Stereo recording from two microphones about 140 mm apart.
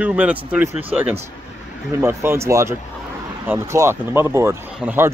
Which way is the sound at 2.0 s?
20° right (ahead or behind).